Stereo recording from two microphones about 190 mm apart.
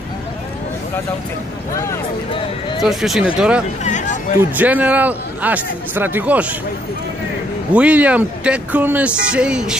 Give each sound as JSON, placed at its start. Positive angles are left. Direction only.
{"t": 2.8, "sound": "speech", "side_deg": 0}
{"t": 3.8, "sound": "a sound", "side_deg": 40}
{"t": 4.6, "sound": "speech", "side_deg": -10}
{"t": 7.7, "sound": "speech", "side_deg": -5}